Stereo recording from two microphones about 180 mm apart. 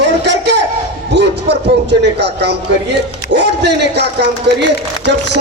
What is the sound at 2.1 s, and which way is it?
A man's voice, 70° right (ahead or behind).